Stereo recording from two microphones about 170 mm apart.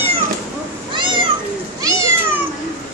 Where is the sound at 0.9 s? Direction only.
30° right (ahead or behind).